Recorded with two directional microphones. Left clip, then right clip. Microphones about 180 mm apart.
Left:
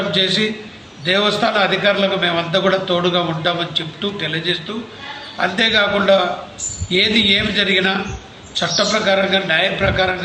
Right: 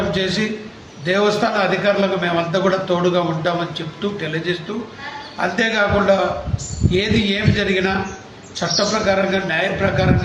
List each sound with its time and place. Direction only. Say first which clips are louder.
0.1 s a man's voice: left 4 dB; 10° right (ahead or behind)